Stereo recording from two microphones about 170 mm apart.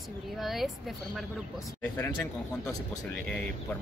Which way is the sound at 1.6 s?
15° left (ahead or behind).